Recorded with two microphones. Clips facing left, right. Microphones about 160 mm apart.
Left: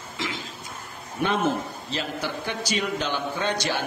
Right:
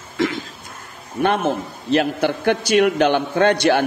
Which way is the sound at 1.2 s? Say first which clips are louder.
Right 5 dB; 60° right (ahead or behind).